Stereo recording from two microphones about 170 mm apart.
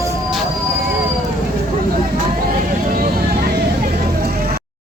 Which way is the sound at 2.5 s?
60° right (ahead or behind).